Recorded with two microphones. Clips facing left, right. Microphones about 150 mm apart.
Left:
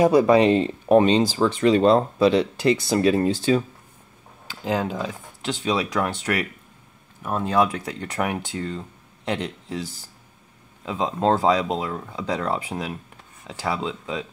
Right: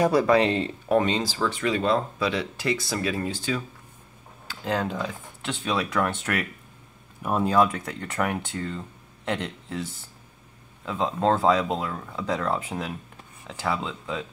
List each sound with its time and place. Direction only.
0.0 s speech: 20° left (ahead or behind)
4.5 s speech: 10° left (ahead or behind)
7.2 s speech: 5° right (ahead or behind)
7.5 s speech: 10° left (ahead or behind)
10.9 s speech: 10° left (ahead or behind)